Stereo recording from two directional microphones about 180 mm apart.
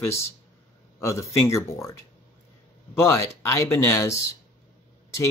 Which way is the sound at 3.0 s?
15° left (ahead or behind).